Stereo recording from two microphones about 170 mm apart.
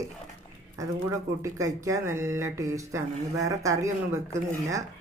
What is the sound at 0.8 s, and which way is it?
Speech, 20° right (ahead or behind).